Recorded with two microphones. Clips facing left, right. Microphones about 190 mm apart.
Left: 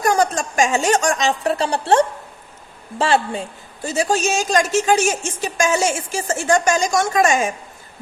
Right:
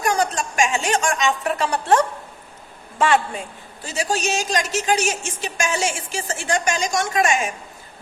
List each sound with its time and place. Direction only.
0.0 s a woman's voice: 40° left (ahead or behind)
3.8 s a woman's voice: 45° left (ahead or behind)